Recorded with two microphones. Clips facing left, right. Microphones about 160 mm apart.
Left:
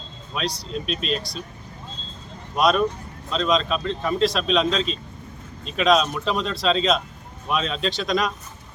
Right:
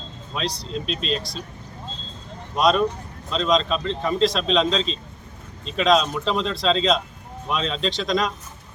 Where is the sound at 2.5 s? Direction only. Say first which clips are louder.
Even; 5° left (ahead or behind).